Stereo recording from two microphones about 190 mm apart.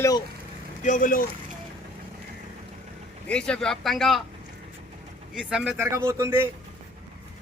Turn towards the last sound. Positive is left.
turn(degrees=-15)  # may be behind; listen again after turning